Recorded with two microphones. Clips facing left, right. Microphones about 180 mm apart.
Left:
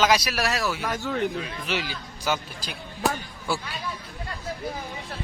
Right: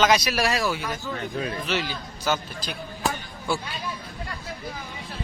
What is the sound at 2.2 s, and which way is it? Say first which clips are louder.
Speech: right 1 dB; 15° left (ahead or behind).